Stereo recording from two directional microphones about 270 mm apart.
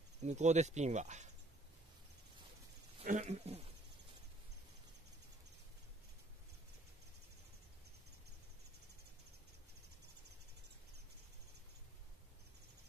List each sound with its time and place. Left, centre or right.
0.2 s speech: right
3.0 s speech: right